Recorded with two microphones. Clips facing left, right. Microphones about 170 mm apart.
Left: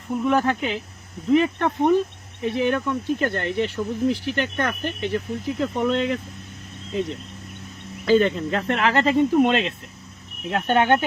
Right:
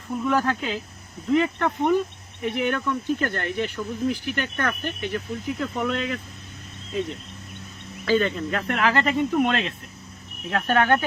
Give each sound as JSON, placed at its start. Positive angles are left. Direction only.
{"t": 0.3, "sound": "speech", "side_deg": 25}
{"t": 8.0, "sound": "speech", "side_deg": 25}